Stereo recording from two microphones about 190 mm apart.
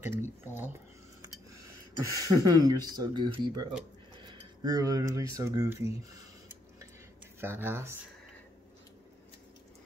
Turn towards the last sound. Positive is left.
turn(degrees=-10)  # may be behind; listen again after turning